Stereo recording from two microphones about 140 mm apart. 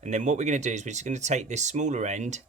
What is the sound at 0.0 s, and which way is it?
Speech, 55° right (ahead or behind).